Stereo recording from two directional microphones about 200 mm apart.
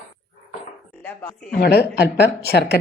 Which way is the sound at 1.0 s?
10° left (ahead or behind).